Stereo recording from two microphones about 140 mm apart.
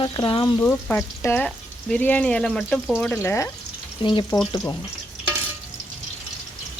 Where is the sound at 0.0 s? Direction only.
35° left (ahead or behind).